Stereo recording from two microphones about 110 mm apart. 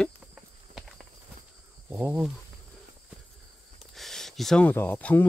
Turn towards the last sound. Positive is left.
turn(degrees=15)  # may be behind; listen again after turning